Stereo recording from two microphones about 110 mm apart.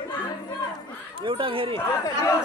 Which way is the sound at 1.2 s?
55° right (ahead or behind).